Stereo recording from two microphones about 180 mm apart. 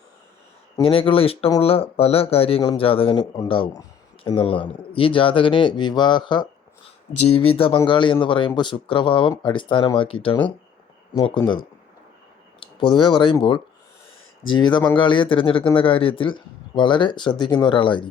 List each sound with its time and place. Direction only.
0.8 s speech: 30° left (ahead or behind)
12.9 s speech: 25° left (ahead or behind)
14.6 s speech: 25° left (ahead or behind)